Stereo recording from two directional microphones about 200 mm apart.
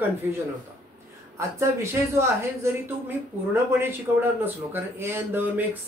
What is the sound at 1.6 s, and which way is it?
Speech, 15° right (ahead or behind).